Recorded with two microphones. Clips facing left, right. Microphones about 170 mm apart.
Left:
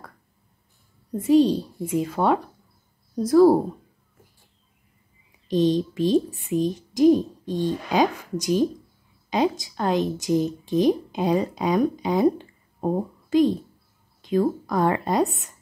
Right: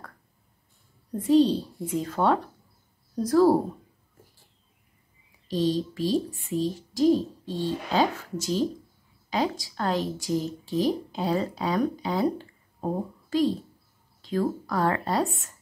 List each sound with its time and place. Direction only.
1.1 s speech: 10° left (ahead or behind)
5.5 s a woman's voice: 20° left (ahead or behind)